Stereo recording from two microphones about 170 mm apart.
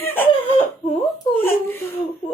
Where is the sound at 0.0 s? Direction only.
10° left (ahead or behind).